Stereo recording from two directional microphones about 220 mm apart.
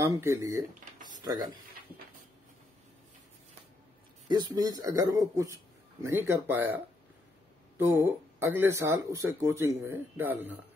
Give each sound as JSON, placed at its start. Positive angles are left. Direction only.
{"t": 0.0, "sound": "speech", "side_deg": -15}
{"t": 4.3, "sound": "speech", "side_deg": -20}
{"t": 7.7, "sound": "speech", "side_deg": -10}